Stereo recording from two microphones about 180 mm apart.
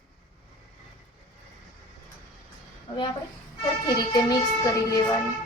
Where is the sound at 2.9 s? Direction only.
30° left (ahead or behind).